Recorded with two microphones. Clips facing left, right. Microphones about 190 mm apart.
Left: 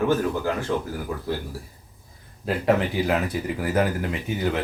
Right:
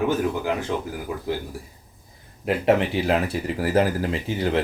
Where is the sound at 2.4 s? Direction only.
25° right (ahead or behind).